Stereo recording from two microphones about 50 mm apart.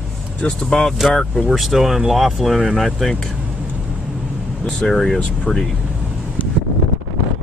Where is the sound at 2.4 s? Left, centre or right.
Centre.